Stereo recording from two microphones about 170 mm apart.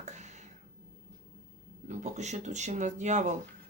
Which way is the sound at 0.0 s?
45° right (ahead or behind).